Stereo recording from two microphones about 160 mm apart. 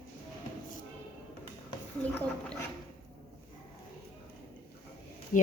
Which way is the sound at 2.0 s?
10° left (ahead or behind).